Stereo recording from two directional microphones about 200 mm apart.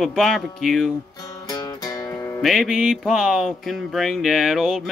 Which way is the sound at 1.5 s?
15° left (ahead or behind).